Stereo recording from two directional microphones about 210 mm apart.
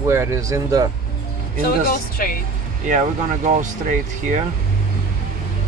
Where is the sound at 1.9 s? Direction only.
45° left (ahead or behind).